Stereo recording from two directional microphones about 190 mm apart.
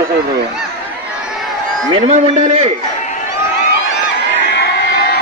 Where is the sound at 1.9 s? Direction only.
35° right (ahead or behind).